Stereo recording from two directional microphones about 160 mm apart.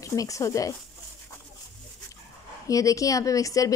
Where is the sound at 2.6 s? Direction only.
20° left (ahead or behind).